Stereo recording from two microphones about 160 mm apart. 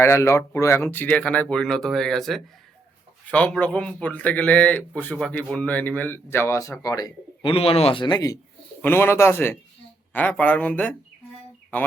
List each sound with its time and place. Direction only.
0.0 s a man's voice: 15° left (ahead or behind)
7.5 s a man's voice: 35° left (ahead or behind); by 10.9 s 10° left (ahead or behind)